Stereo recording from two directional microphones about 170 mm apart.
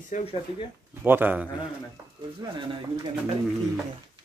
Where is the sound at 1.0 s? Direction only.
10° right (ahead or behind).